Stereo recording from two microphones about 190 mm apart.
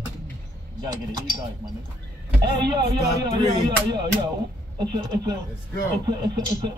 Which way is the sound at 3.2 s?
20° right (ahead or behind).